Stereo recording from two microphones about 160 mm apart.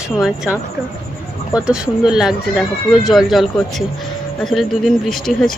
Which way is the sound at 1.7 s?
5° right (ahead or behind).